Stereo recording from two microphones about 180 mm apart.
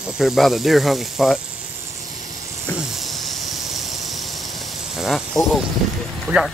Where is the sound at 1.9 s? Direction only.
45° left (ahead or behind).